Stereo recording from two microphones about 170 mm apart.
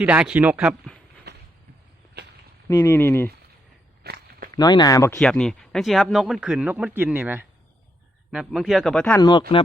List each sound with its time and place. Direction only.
0.0 s speech: 10° right (ahead or behind)
1.3 s a sound: 80° right
2.6 s speech: 15° left (ahead or behind)
4.0 s walk: 65° right (ahead or behind)
4.5 s speech: 25° left (ahead or behind)
5.1 s speech: 5° left (ahead or behind)